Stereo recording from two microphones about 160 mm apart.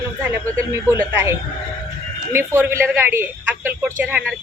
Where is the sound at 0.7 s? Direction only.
15° right (ahead or behind).